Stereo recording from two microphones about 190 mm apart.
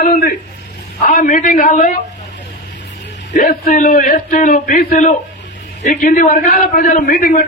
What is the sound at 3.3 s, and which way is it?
A man's voice, 45° left (ahead or behind).